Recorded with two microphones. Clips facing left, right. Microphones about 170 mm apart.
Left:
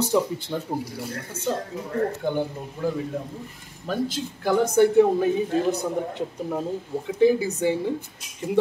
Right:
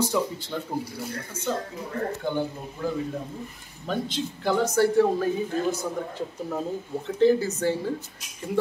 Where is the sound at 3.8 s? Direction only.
5° left (ahead or behind).